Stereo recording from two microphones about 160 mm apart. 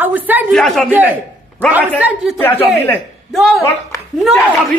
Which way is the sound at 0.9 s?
10° right (ahead or behind).